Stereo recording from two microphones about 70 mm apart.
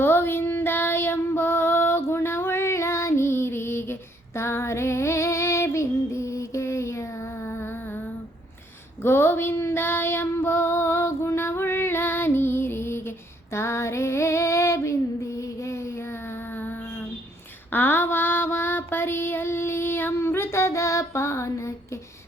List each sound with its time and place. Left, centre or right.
0.0 s female singing: left
9.0 s female singing: left
17.7 s child singing: left